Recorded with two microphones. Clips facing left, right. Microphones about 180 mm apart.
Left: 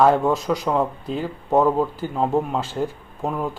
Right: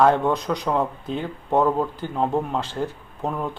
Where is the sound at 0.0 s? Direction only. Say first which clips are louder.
Left 1 dB; 5° left (ahead or behind).